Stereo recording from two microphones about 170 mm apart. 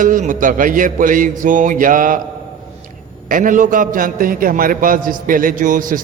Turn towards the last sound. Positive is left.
turn(degrees=-50)  # may be behind; listen again after turning